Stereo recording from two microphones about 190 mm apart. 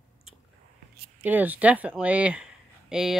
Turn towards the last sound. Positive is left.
turn(degrees=-5)  # may be behind; listen again after turning